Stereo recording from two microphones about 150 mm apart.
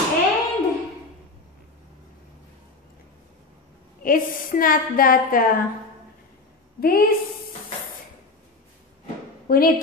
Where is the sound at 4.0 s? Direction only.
70° left (ahead or behind).